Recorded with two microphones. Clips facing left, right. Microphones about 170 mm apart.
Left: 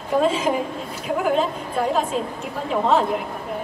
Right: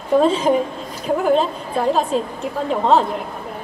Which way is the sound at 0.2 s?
35° right (ahead or behind).